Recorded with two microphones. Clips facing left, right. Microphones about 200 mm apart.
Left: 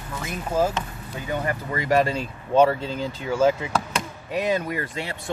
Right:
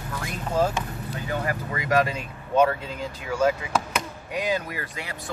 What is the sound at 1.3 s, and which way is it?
Speech, 25° left (ahead or behind).